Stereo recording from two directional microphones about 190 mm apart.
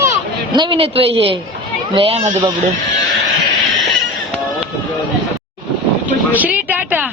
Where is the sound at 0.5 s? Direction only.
25° right (ahead or behind).